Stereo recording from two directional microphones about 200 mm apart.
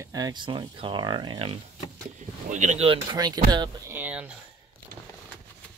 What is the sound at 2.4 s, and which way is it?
Speech, 40° right (ahead or behind).